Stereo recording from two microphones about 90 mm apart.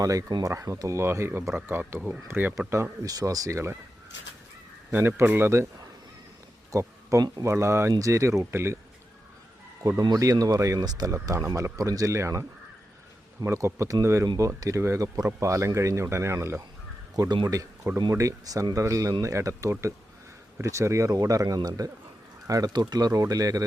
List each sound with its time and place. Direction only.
0.0 s speech: 40° right (ahead or behind)
4.9 s speech: 25° right (ahead or behind)
6.7 s speech: 35° right (ahead or behind)
9.8 s speech: 40° right (ahead or behind)
17.2 s speech: 50° right (ahead or behind)